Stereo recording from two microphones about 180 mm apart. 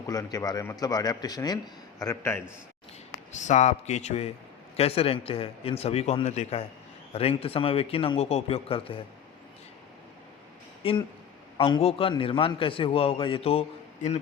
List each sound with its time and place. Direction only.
0.1 s a man's voice: 20° left (ahead or behind)
3.3 s a man's voice: 40° left (ahead or behind)
10.8 s a man's voice: 30° left (ahead or behind)